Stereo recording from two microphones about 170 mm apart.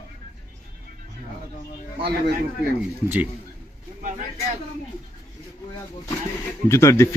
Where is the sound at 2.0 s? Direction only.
75° right (ahead or behind).